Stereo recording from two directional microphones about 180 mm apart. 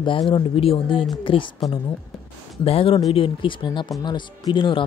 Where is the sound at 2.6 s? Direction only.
30° left (ahead or behind).